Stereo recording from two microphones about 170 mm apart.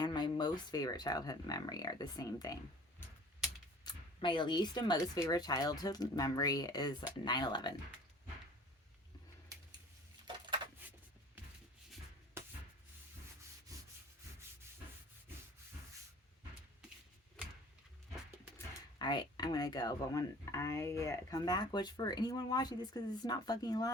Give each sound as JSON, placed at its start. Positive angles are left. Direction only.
{"t": 0.0, "sound": "speech", "side_deg": 25}
{"t": 3.8, "sound": "speech", "side_deg": 30}
{"t": 9.5, "sound": "a sound", "side_deg": -20}
{"t": 13.7, "sound": "rub", "side_deg": -20}
{"t": 18.9, "sound": "speech", "side_deg": 25}